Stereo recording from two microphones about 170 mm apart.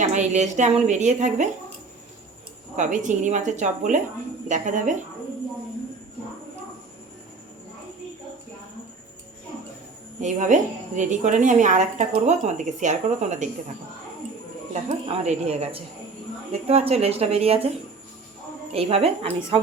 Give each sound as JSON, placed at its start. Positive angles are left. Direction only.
{"t": 0.1, "sound": "a woman's voice", "side_deg": -45}
{"t": 2.7, "sound": "a woman's voice", "side_deg": -45}
{"t": 10.2, "sound": "a woman's voice", "side_deg": -45}
{"t": 14.7, "sound": "speech", "side_deg": -35}